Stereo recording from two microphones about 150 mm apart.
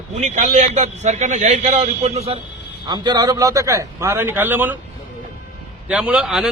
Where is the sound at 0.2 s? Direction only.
55° right (ahead or behind).